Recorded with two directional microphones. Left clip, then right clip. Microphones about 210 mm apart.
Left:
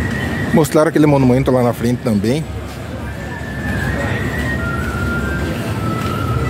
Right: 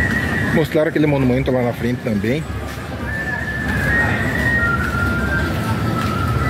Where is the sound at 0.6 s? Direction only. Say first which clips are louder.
Left 5 dB; 30° left (ahead or behind).